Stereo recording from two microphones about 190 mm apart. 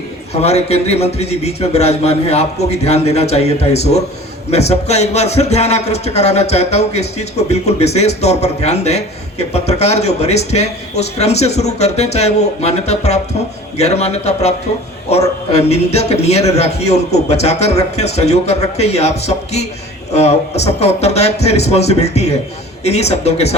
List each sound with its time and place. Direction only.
0.4 s a man's voice: 35° left (ahead or behind)